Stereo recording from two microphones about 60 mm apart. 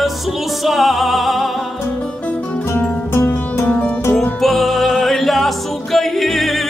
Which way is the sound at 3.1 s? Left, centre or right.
Left.